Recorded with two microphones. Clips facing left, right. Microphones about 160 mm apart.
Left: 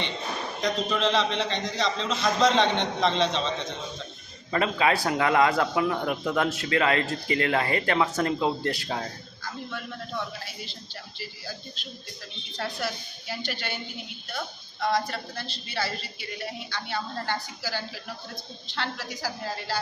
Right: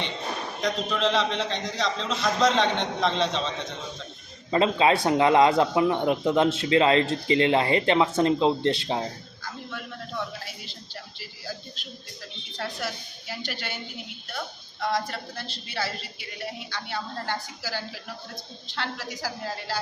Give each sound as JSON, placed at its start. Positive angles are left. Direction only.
{"t": 0.6, "sound": "a man's voice", "side_deg": 0}
{"t": 4.5, "sound": "a man's voice", "side_deg": -25}
{"t": 13.4, "sound": "a man's voice", "side_deg": -5}
{"t": 16.7, "sound": "a woman's voice", "side_deg": -5}